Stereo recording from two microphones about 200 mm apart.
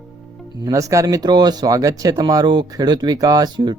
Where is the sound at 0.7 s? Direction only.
15° right (ahead or behind).